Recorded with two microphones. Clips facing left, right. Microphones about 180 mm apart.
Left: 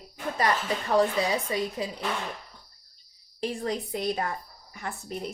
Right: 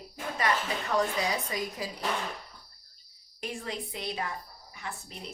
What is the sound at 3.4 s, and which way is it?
A woman's voice, 40° left (ahead or behind).